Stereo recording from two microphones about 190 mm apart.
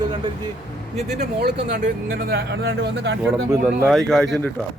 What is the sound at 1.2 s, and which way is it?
Speech, 60° right (ahead or behind).